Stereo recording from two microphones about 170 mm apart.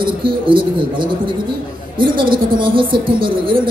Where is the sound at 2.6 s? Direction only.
30° right (ahead or behind).